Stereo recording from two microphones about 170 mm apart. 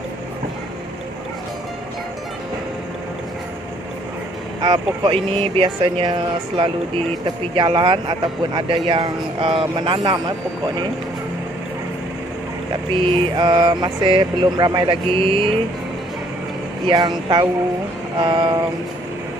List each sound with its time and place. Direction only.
4.6 s speech: 30° right (ahead or behind)
12.9 s mantra: 30° right (ahead or behind)
16.8 s speech: 25° right (ahead or behind)